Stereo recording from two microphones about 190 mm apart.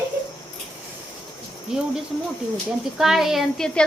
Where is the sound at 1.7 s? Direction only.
5° right (ahead or behind).